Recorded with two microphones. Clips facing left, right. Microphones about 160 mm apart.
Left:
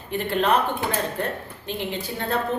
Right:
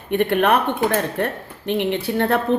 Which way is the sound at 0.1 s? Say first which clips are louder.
Right 5 dB; 60° right (ahead or behind).